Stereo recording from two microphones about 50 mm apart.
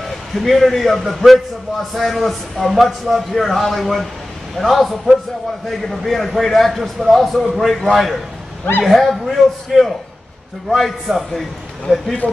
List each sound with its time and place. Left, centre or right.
0.3 s a man's voice: centre
11.9 s speech: right